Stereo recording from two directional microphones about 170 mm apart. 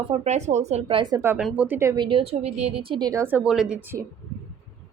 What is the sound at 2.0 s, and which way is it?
Speech, 30° right (ahead or behind).